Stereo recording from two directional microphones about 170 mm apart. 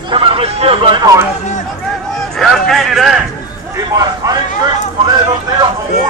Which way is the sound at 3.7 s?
20° right (ahead or behind).